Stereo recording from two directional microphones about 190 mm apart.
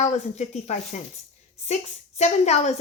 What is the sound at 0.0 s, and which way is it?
A woman's voice, 35° left (ahead or behind).